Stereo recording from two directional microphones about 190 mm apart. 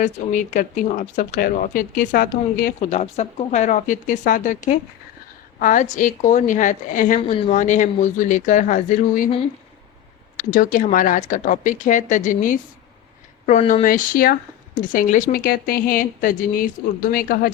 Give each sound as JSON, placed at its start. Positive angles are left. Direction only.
{"t": 0.0, "sound": "speech", "side_deg": 40}
{"t": 3.0, "sound": "speech", "side_deg": 35}
{"t": 7.2, "sound": "speech", "side_deg": 35}
{"t": 10.3, "sound": "speech", "side_deg": 45}